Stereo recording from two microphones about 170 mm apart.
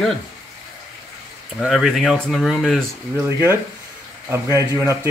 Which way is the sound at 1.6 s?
Centre (ahead or behind).